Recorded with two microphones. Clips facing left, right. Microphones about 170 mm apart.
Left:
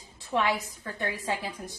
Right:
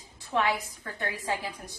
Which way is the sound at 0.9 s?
20° left (ahead or behind).